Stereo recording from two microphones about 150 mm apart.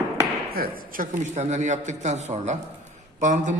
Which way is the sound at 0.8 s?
70° right (ahead or behind).